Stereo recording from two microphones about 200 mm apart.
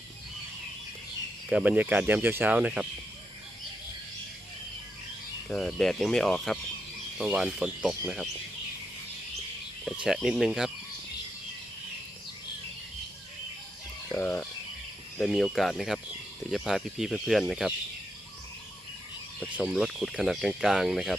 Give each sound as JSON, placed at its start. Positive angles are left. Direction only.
{"t": 1.5, "sound": "speech", "side_deg": -5}
{"t": 5.5, "sound": "speech", "side_deg": 5}
{"t": 9.8, "sound": "speech", "side_deg": -5}
{"t": 14.1, "sound": "speech", "side_deg": 10}
{"t": 19.5, "sound": "speech", "side_deg": -5}